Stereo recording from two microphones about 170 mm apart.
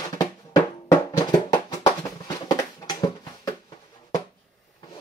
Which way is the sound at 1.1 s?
20° left (ahead or behind).